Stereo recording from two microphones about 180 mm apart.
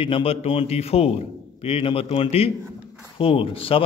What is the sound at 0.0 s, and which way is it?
A man's voice, 30° left (ahead or behind).